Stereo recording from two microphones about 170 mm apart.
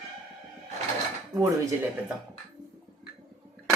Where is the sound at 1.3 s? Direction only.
15° right (ahead or behind).